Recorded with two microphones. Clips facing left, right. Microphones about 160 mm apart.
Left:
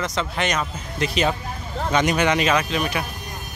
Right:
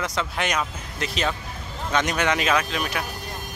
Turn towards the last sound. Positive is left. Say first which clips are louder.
# left 3 dB
turn(degrees=0)  # may be behind; listen again after turning